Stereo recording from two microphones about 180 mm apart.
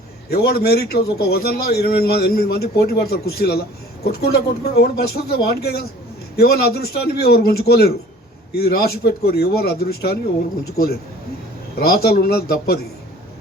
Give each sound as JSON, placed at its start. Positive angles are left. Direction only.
{"t": 0.3, "sound": "a man's voice", "side_deg": 60}